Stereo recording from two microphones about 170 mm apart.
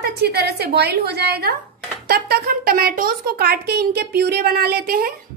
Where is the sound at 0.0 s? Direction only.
75° right (ahead or behind).